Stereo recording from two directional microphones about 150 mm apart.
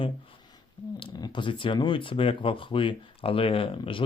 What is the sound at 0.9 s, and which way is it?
Speech, 30° left (ahead or behind).